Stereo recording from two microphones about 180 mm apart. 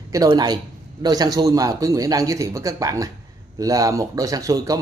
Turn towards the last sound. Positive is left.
turn(degrees=-20)  # may be behind; listen again after turning